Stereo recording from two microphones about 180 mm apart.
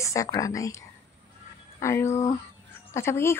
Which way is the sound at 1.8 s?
15° left (ahead or behind).